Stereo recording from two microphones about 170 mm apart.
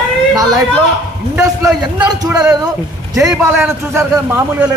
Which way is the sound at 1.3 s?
20° right (ahead or behind).